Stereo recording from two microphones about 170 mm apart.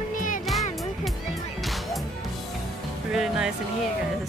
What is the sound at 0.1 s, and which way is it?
Music, 50° left (ahead or behind).